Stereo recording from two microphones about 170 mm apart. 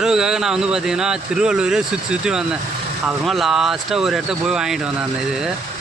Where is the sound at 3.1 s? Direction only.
Centre (ahead or behind).